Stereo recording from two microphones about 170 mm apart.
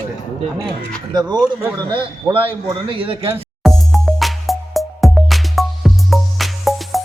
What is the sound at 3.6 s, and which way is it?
Music, centre (ahead or behind).